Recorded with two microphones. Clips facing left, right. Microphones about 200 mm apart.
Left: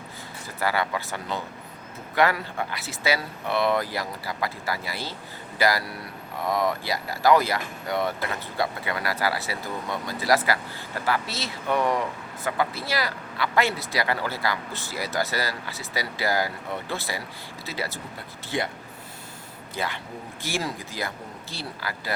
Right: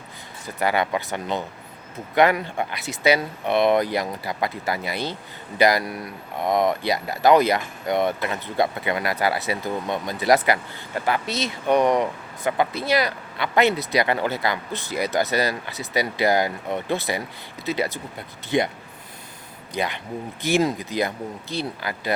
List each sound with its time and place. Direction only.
0.4 s speech: 20° right (ahead or behind)
19.7 s speech: 15° right (ahead or behind)